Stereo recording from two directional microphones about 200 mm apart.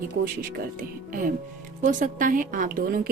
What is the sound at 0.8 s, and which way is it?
A woman's voice, 45° right (ahead or behind).